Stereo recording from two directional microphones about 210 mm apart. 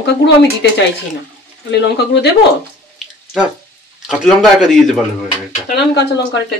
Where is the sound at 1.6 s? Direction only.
55° left (ahead or behind).